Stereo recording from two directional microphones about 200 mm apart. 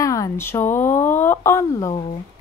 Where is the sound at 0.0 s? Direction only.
15° left (ahead or behind).